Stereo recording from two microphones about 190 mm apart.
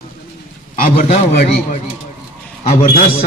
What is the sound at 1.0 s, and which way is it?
Speech, 55° left (ahead or behind).